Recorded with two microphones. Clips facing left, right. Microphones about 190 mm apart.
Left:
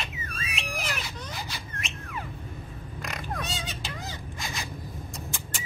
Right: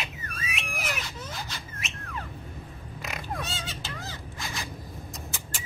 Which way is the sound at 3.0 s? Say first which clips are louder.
Even; 5° right (ahead or behind).